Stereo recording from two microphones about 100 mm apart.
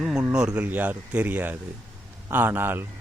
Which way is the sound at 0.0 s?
5° right (ahead or behind).